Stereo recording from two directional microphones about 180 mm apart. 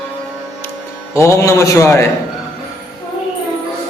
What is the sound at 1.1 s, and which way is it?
Speech, 15° left (ahead or behind).